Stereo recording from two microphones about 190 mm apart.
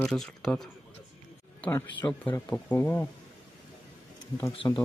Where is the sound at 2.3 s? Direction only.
10° left (ahead or behind).